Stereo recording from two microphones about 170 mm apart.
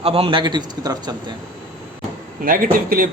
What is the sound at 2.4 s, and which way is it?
Speech, 55° right (ahead or behind).